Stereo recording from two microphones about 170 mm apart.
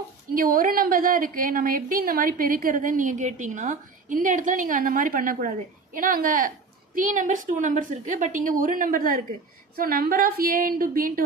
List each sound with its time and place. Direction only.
0.3 s a woman's voice: 55° right (ahead or behind)